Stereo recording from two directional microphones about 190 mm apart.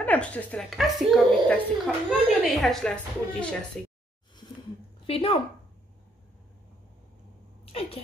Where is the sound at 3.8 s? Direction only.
5° left (ahead or behind).